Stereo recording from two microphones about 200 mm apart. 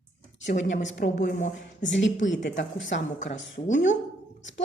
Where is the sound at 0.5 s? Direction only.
65° left (ahead or behind).